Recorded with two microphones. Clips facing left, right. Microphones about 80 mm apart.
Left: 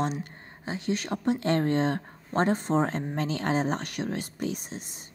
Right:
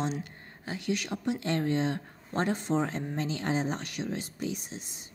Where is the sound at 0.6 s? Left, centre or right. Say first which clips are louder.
Left 2 dB; left.